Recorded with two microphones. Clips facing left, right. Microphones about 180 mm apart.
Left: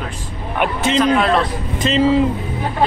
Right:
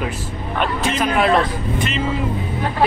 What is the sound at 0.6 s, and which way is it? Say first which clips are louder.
Speech: left 3 dB; 20° left (ahead or behind).